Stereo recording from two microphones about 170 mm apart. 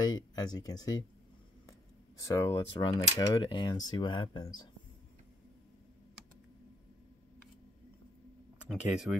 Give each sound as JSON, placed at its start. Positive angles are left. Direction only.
{"t": 0.0, "sound": "speech", "side_deg": 25}
{"t": 8.6, "sound": "speech", "side_deg": 0}